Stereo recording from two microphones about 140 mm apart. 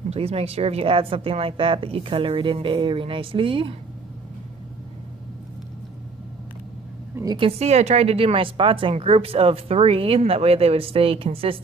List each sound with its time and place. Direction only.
0.1 s speech: 45° right (ahead or behind)
7.3 s speech: 45° right (ahead or behind)